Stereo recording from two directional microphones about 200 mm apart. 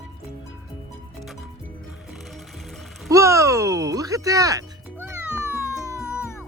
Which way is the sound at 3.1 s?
15° right (ahead or behind).